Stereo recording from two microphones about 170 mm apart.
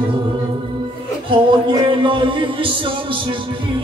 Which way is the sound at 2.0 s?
30° right (ahead or behind).